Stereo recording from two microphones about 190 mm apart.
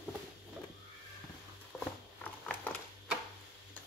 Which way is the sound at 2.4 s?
5° left (ahead or behind).